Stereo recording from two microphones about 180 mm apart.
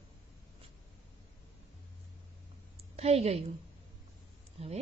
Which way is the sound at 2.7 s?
35° right (ahead or behind).